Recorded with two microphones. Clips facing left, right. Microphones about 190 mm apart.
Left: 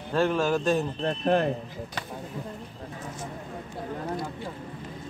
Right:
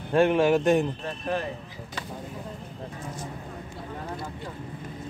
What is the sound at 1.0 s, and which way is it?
Speech, 55° left (ahead or behind).